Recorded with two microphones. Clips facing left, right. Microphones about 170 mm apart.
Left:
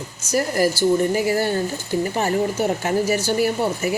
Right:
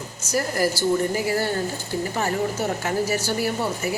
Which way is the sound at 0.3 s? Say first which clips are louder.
Left 3 dB; 20° left (ahead or behind).